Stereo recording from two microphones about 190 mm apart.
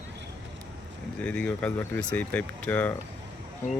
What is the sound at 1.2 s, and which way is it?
Speech, 5° left (ahead or behind).